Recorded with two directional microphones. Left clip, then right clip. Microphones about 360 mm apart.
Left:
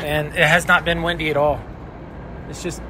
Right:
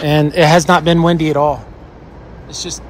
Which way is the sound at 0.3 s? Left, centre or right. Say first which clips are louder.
Right 4 dB; centre.